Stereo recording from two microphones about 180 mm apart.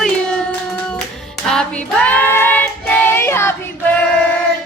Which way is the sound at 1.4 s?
5° left (ahead or behind).